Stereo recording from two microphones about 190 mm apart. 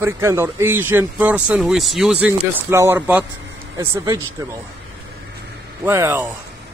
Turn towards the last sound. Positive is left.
turn(degrees=-15)  # may be behind; listen again after turning